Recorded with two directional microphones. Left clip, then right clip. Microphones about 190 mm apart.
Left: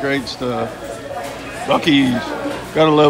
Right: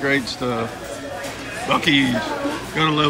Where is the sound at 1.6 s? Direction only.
25° left (ahead or behind).